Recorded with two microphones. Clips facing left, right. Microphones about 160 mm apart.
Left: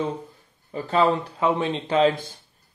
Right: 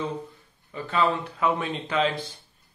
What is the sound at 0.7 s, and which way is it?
Speech, 35° left (ahead or behind).